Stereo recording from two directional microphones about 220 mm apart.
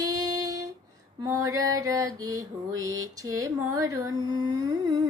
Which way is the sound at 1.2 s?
15° right (ahead or behind).